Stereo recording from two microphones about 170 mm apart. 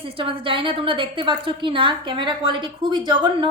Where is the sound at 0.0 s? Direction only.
30° right (ahead or behind).